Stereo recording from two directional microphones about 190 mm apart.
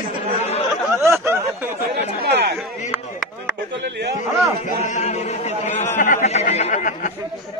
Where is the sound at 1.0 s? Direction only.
15° right (ahead or behind).